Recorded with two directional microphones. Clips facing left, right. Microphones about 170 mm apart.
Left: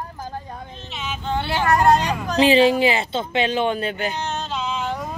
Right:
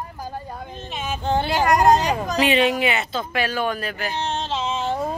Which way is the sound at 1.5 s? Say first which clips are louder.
Even; 15° right (ahead or behind).